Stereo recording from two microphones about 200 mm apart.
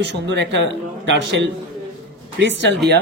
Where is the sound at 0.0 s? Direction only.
60° right (ahead or behind).